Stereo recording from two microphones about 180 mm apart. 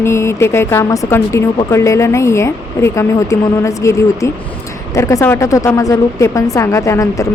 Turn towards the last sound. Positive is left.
turn(degrees=15)  # may be behind; listen again after turning